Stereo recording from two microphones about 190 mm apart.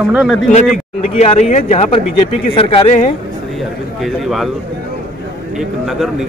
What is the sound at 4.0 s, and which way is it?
Speech, centre (ahead or behind).